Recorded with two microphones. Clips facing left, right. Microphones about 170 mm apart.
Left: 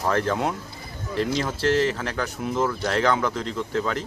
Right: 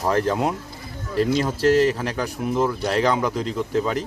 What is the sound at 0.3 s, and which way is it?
Speech, 5° right (ahead or behind).